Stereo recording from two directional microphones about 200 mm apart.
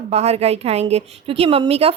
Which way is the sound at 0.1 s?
30° right (ahead or behind).